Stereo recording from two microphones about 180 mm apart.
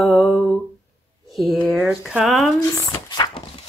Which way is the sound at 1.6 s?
Centre (ahead or behind).